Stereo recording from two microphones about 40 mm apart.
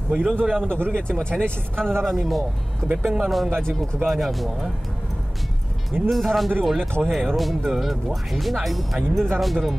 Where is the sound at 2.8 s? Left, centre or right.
Right.